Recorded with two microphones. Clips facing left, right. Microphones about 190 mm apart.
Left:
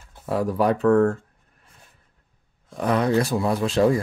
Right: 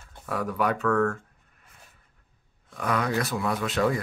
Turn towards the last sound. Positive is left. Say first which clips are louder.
# left 6 dB
turn(degrees=30)  # may be behind; listen again after turning